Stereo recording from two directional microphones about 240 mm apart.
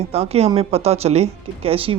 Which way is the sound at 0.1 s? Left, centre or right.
Right.